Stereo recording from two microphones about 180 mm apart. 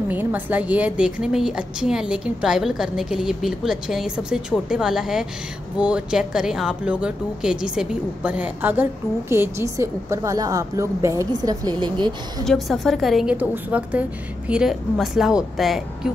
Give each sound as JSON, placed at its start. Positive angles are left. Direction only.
{"t": 0.1, "sound": "a woman's voice", "side_deg": -10}
{"t": 12.4, "sound": "a woman's voice", "side_deg": 0}